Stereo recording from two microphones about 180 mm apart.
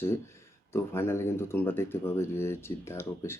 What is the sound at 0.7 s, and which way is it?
Speech, 15° left (ahead or behind).